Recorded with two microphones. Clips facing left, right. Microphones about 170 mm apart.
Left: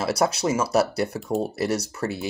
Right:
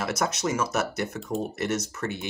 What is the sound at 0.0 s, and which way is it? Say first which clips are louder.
Speech: left 5 dB; 35° left (ahead or behind).